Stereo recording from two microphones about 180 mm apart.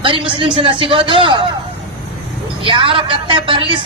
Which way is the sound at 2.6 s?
30° right (ahead or behind).